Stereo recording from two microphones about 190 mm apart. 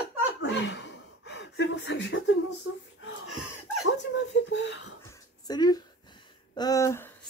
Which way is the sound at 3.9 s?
70° left (ahead or behind).